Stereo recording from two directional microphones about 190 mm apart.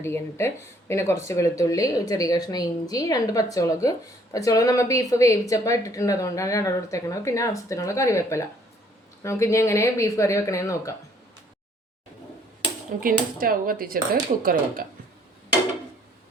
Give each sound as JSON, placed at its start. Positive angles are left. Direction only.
{"t": 0.0, "sound": "speech", "side_deg": 15}
{"t": 13.0, "sound": "speech", "side_deg": -50}